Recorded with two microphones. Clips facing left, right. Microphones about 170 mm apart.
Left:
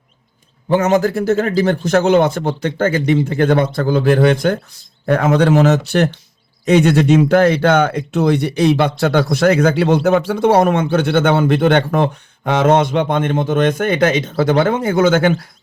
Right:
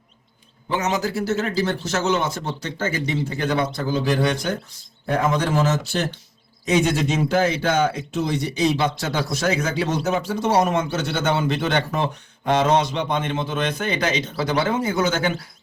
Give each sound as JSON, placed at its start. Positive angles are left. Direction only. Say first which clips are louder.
{"t": 0.7, "sound": "speech", "louder": "left 9 dB", "side_deg": 55}
{"t": 5.0, "sound": "speech", "louder": "left 8 dB", "side_deg": 70}